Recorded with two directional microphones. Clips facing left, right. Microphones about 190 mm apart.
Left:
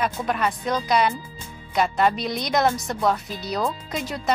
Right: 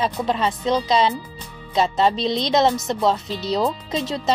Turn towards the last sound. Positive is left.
turn(degrees=-25)  # may be behind; listen again after turning